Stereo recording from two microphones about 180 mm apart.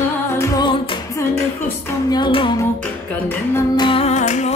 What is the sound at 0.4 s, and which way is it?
Music, 20° left (ahead or behind).